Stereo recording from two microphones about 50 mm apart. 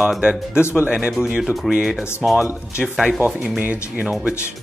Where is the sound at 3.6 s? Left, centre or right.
Right.